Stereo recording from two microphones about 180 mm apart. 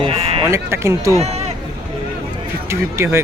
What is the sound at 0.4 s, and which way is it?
Speech, 15° right (ahead or behind).